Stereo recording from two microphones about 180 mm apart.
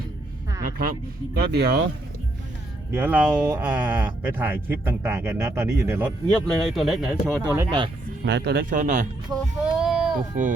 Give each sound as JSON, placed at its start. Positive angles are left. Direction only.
{"t": 0.6, "sound": "speech", "side_deg": -55}
{"t": 2.9, "sound": "speech", "side_deg": -10}
{"t": 6.3, "sound": "speech", "side_deg": 0}
{"t": 7.3, "sound": "speech", "side_deg": -15}
{"t": 8.2, "sound": "speech", "side_deg": -65}
{"t": 8.7, "sound": "speech", "side_deg": -45}
{"t": 9.6, "sound": "a sound", "side_deg": -5}